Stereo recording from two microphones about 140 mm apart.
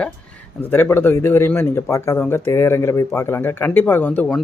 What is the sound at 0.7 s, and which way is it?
Speech, 15° left (ahead or behind).